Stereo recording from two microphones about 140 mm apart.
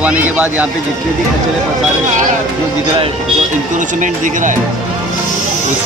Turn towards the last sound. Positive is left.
turn(degrees=-65)  # may be behind; listen again after turning